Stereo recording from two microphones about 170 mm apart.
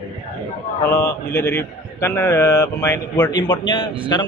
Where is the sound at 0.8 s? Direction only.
20° left (ahead or behind).